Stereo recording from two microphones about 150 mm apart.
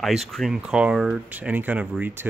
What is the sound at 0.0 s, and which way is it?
Speech, centre (ahead or behind).